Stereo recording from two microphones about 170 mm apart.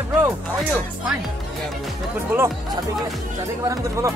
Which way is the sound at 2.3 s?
20° right (ahead or behind).